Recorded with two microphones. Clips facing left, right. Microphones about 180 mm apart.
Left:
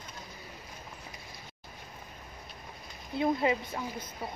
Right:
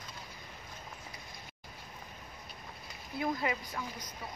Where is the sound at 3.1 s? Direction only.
25° left (ahead or behind).